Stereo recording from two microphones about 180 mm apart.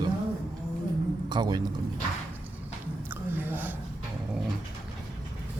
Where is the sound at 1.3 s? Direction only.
25° right (ahead or behind).